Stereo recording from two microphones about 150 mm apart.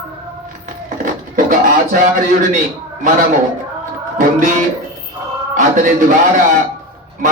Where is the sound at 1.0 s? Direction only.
65° right (ahead or behind).